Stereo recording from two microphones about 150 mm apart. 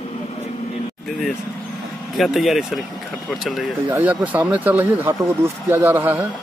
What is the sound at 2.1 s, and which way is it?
Speech, centre (ahead or behind).